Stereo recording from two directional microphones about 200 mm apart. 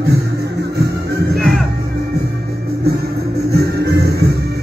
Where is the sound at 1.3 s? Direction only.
Centre (ahead or behind).